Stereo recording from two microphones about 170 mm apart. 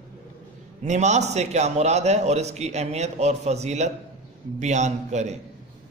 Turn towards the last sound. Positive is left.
turn(degrees=-40)  # may be behind; listen again after turning